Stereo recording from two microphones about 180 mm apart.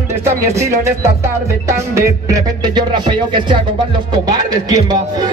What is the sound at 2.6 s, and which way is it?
Music, 25° right (ahead or behind).